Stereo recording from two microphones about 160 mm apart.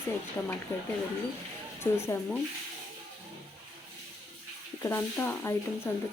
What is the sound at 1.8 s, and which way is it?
Speech, 15° left (ahead or behind).